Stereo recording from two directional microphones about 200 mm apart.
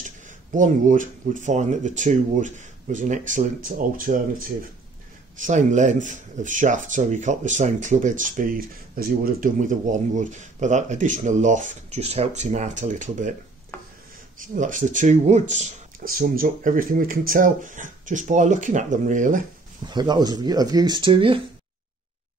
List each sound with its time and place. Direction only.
0.5 s speech: 40° right (ahead or behind)
5.4 s speech: 40° right (ahead or behind)
14.4 s speech: 40° right (ahead or behind)
19.9 s speech: 20° right (ahead or behind)